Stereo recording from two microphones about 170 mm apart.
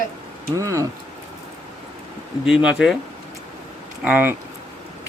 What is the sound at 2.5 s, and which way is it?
Speech, 5° right (ahead or behind).